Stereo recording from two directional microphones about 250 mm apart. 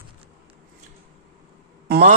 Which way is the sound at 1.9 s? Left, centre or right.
Right.